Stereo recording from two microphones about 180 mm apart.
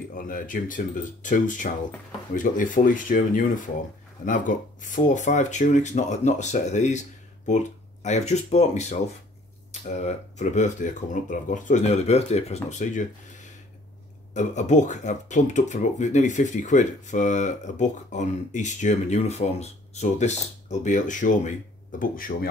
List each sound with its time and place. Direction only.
0.1 s speech: 50° left (ahead or behind)
14.3 s speech: 40° left (ahead or behind)